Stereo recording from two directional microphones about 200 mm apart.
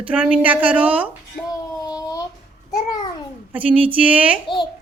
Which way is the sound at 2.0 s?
20° left (ahead or behind).